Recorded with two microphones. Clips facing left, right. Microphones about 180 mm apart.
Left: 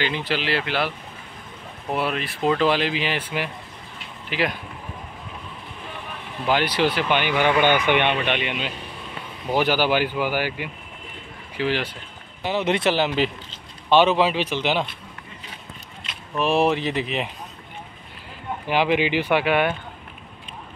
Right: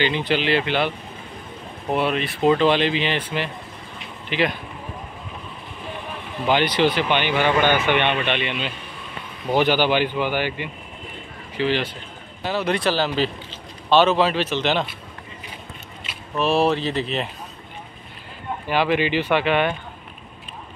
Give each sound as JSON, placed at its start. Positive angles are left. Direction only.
{"t": 0.0, "sound": "speech", "side_deg": 5}
{"t": 6.4, "sound": "speech", "side_deg": 5}
{"t": 12.4, "sound": "speech", "side_deg": 20}
{"t": 16.3, "sound": "speech", "side_deg": 15}
{"t": 18.7, "sound": "speech", "side_deg": 15}